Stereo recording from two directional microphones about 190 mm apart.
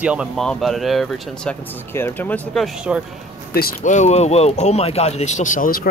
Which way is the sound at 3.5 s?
45° left (ahead or behind).